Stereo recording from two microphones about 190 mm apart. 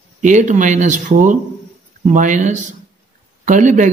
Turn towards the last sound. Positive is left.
turn(degrees=-40)  # may be behind; listen again after turning